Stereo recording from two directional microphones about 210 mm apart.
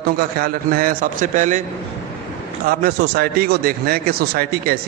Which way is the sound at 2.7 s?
45° right (ahead or behind).